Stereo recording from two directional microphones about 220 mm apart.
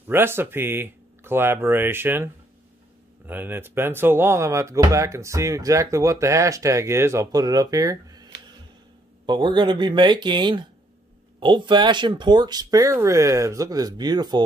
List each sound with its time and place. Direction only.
0.1 s speech: 10° right (ahead or behind)